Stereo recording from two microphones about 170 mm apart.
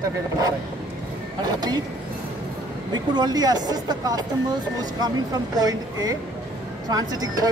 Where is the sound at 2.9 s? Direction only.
25° right (ahead or behind).